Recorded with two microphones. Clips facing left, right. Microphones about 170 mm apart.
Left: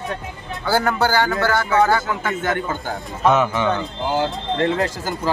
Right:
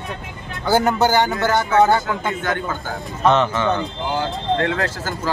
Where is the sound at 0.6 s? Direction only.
20° right (ahead or behind).